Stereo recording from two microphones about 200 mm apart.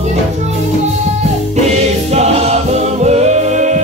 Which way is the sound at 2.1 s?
35° right (ahead or behind).